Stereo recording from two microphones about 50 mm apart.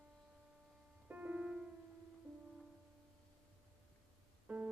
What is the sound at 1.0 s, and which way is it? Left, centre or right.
Music, right.